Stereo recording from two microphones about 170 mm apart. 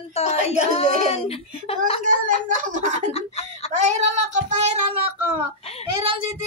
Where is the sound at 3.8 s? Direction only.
45° right (ahead or behind).